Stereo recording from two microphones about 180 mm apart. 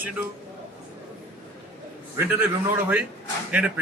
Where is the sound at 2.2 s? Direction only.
10° right (ahead or behind).